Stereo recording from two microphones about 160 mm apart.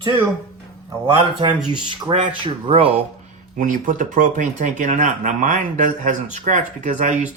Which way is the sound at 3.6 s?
55° right (ahead or behind).